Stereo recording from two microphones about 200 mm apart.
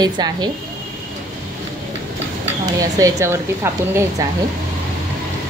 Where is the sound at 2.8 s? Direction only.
15° right (ahead or behind).